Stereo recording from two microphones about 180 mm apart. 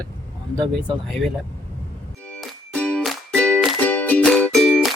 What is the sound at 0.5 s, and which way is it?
Speech, 25° right (ahead or behind).